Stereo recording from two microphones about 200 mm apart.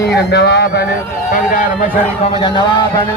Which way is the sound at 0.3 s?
60° left (ahead or behind).